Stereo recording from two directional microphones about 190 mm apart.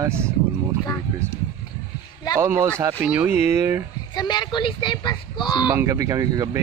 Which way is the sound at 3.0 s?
5° right (ahead or behind).